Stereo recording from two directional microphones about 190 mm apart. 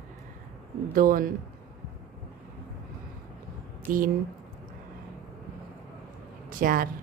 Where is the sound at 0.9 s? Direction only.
50° right (ahead or behind).